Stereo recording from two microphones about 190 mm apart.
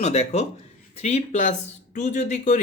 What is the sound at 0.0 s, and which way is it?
Speech, 35° left (ahead or behind).